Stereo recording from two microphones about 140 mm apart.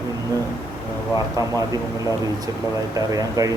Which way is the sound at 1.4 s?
25° right (ahead or behind).